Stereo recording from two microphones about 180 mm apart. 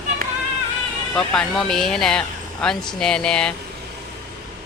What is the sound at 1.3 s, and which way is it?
Speech, 5° left (ahead or behind).